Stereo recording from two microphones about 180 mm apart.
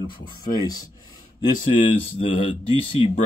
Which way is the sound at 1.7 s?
35° left (ahead or behind).